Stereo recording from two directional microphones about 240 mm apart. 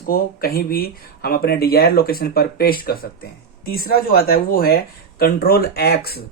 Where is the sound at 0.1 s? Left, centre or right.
Left.